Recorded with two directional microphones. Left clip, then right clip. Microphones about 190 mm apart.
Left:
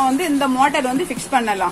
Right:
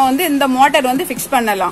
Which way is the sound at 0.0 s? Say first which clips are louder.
Right 4 dB; 55° right (ahead or behind).